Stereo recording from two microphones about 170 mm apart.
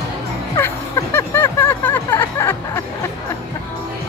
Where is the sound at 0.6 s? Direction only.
15° left (ahead or behind).